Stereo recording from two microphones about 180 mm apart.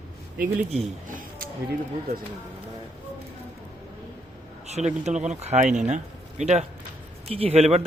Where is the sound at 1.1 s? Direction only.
50° right (ahead or behind).